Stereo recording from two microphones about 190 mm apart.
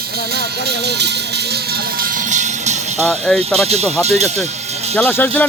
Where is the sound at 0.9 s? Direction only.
60° right (ahead or behind).